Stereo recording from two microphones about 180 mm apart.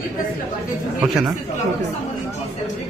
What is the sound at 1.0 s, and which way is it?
Speech, centre (ahead or behind).